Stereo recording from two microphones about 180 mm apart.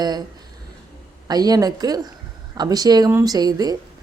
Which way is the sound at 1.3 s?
20° right (ahead or behind).